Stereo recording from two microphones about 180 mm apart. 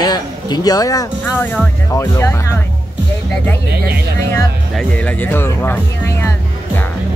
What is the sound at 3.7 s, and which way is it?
Speech, 60° right (ahead or behind).